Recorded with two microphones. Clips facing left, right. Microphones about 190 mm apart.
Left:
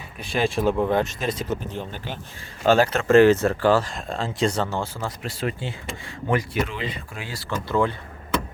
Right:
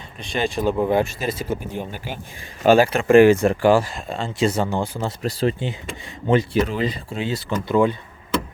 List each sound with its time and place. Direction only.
0.2 s speech: centre (ahead or behind)
3.9 s speech: centre (ahead or behind); by 5.1 s 15° right (ahead or behind)
5.2 s speech: 35° right (ahead or behind)
7.1 s speech: 25° right (ahead or behind)